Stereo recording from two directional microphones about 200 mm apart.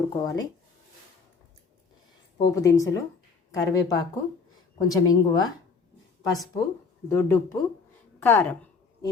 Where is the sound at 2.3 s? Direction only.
20° left (ahead or behind).